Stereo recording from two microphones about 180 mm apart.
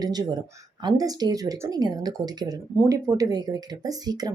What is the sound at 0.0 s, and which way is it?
Speech, 20° right (ahead or behind).